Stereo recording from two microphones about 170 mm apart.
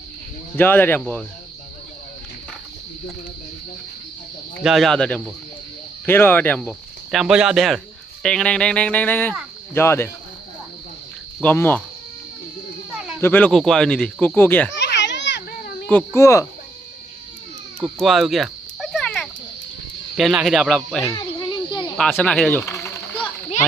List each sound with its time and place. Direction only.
0.5 s speech: 10° left (ahead or behind)
4.6 s speech: centre (ahead or behind)
11.4 s speech: 10° left (ahead or behind)
13.2 s speech: 10° left (ahead or behind)
14.8 s children playing: 90° left
15.9 s speech: 15° left (ahead or behind)
17.7 s a sound: centre (ahead or behind)
20.1 s speech: 5° right (ahead or behind)
21.7 s snake: 25° left (ahead or behind)
21.9 s a sound: 5° left (ahead or behind)